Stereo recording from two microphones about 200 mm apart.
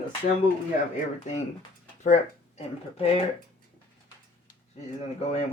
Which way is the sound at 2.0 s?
35° left (ahead or behind).